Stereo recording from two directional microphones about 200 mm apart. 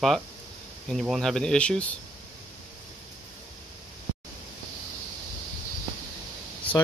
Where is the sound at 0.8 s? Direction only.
Centre (ahead or behind).